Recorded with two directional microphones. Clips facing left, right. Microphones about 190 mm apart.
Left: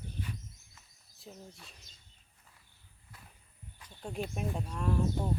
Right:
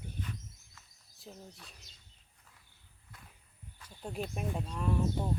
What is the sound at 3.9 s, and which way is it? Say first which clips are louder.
Speech: left 1 dB; 5° right (ahead or behind).